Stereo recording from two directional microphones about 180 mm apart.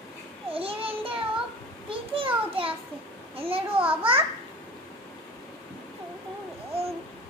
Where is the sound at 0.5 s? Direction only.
30° right (ahead or behind).